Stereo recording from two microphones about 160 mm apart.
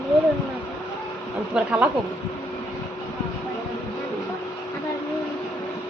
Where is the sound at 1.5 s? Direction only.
10° right (ahead or behind).